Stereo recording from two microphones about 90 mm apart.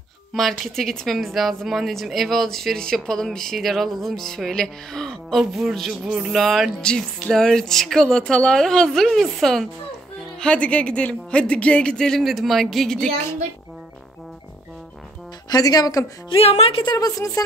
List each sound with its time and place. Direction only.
0.3 s a woman's voice: centre (ahead or behind)
15.5 s speech: 45° left (ahead or behind)
16.3 s a woman's voice: 90° left
16.9 s speech: 40° left (ahead or behind)